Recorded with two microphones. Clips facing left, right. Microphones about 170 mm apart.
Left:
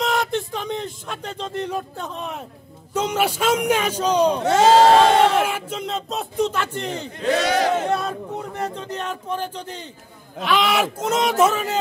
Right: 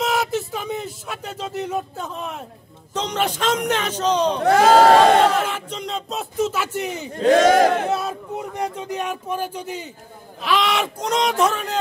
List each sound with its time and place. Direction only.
0.0 s a sound: 5° right (ahead or behind)
2.9 s a man's voice: 10° left (ahead or behind)
4.6 s speech: 25° left (ahead or behind)
5.4 s speech: 10° left (ahead or behind); by 7.1 s 10° right (ahead or behind)
7.2 s speech: 45° right (ahead or behind)
7.8 s speech: 5° right (ahead or behind)